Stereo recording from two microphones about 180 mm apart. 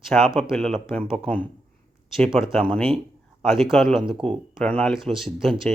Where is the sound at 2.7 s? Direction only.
30° right (ahead or behind).